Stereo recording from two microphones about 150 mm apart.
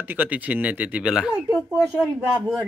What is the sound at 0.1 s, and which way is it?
Speech, 10° right (ahead or behind).